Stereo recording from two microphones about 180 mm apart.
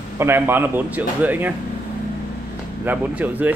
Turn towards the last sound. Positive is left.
turn(degrees=-10)  # may be behind; listen again after turning